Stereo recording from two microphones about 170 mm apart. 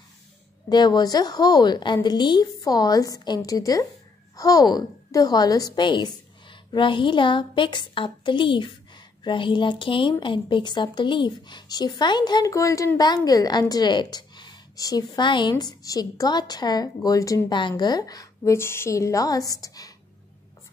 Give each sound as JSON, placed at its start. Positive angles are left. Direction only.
{"t": 0.7, "sound": "a woman's voice", "side_deg": 25}